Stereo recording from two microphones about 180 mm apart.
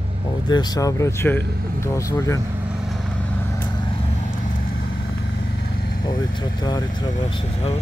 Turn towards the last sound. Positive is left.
turn(degrees=25)  # may be behind; listen again after turning